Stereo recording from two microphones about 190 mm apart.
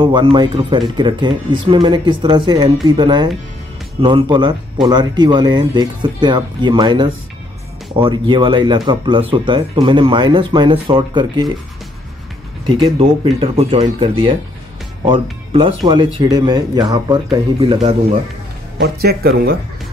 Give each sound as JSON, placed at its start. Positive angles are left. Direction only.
{"t": 0.0, "sound": "speech", "side_deg": -25}
{"t": 12.6, "sound": "speech", "side_deg": -25}
{"t": 18.8, "sound": "speech", "side_deg": -55}